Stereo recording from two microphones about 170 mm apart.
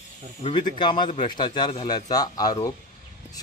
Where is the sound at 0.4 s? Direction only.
40° left (ahead or behind).